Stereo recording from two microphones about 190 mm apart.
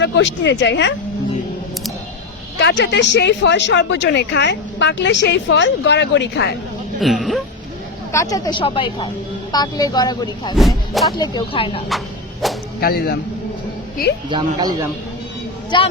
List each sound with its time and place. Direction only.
0.0 s speech: 70° left (ahead or behind)
2.6 s speech: 65° left (ahead or behind)
7.0 s speech: centre (ahead or behind)
8.1 s speech: 20° left (ahead or behind)
10.5 s speech: centre (ahead or behind)
11.2 s speech: 25° left (ahead or behind)
11.9 s music: centre (ahead or behind)
12.8 s a man's voice: 55° left (ahead or behind)
14.3 s speech: 25° right (ahead or behind)
15.7 s speech: 25° left (ahead or behind)